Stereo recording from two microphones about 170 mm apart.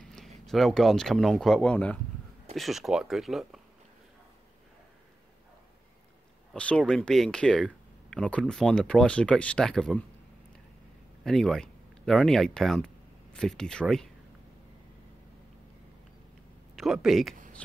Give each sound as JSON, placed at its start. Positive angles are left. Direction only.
{"t": 0.0, "sound": "speech", "side_deg": 0}
{"t": 6.5, "sound": "speech", "side_deg": 5}
{"t": 11.2, "sound": "speech", "side_deg": 0}
{"t": 16.7, "sound": "speech", "side_deg": 0}